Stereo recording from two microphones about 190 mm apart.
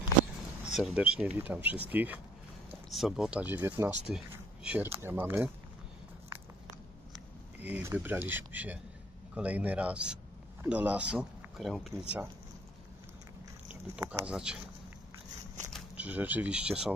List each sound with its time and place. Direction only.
0.7 s speech: 5° right (ahead or behind)
7.6 s speech: 10° right (ahead or behind)
13.9 s speech: 10° right (ahead or behind)
15.7 s speech: 10° right (ahead or behind)